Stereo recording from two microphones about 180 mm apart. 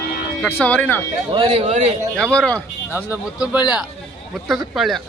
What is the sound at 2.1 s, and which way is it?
Speech, 5° left (ahead or behind).